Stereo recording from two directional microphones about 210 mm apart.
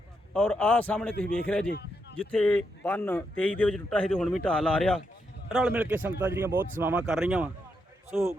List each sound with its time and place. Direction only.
0.3 s a man's voice: 5° left (ahead or behind)
1.7 s a sound: 50° left (ahead or behind)
2.1 s speech: 5° left (ahead or behind)